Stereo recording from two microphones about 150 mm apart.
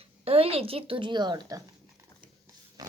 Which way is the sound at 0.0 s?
40° right (ahead or behind).